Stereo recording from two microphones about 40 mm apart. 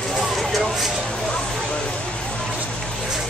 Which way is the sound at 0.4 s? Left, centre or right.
Centre.